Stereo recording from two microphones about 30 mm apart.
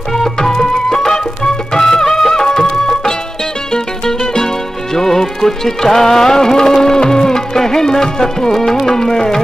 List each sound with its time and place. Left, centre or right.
0.1 s music: centre